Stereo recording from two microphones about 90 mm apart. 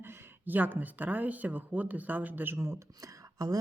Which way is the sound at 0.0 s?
25° right (ahead or behind).